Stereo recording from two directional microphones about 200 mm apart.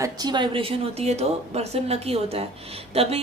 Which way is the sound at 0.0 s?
20° right (ahead or behind).